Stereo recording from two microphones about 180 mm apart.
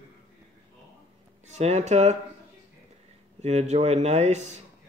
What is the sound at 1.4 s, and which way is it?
Speech, 40° right (ahead or behind).